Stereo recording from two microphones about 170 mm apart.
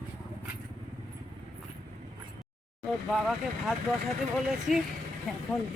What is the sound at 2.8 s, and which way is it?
Speech, centre (ahead or behind).